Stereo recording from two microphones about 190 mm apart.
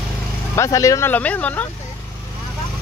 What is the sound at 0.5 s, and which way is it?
Speech, 15° left (ahead or behind).